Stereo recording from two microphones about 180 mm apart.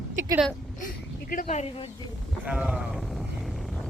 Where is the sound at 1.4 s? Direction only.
35° left (ahead or behind).